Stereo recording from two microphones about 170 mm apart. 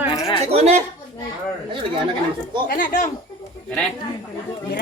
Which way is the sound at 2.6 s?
55° left (ahead or behind).